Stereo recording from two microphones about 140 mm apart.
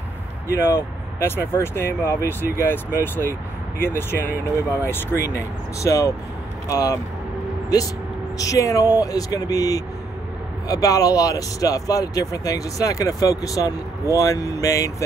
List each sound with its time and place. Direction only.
0.5 s speech: 20° left (ahead or behind)
8.4 s speech: 25° left (ahead or behind)